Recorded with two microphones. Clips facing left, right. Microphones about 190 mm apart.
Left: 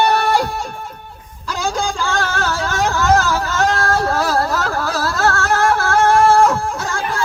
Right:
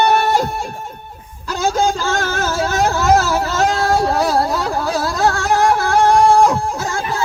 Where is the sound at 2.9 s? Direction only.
20° right (ahead or behind).